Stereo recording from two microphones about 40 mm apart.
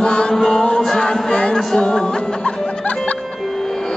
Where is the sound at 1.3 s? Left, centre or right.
Left.